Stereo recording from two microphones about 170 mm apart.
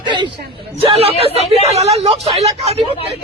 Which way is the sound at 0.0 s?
25° right (ahead or behind).